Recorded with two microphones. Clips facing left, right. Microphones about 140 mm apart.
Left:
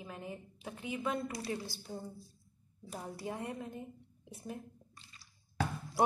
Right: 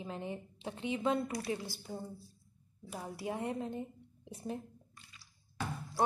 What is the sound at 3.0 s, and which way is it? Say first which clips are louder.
Speech: right 3 dB; 15° right (ahead or behind).